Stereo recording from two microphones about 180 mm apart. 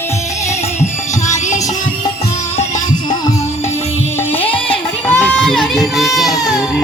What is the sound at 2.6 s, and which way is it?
Music, 45° left (ahead or behind).